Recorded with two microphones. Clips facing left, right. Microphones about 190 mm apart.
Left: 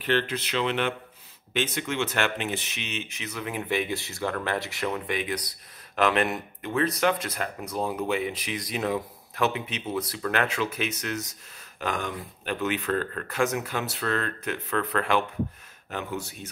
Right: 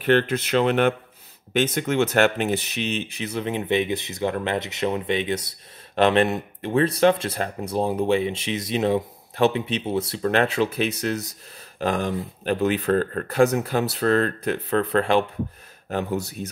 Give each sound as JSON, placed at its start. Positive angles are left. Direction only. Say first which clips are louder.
{"t": 0.0, "sound": "speech", "louder": "right 7 dB", "side_deg": -50}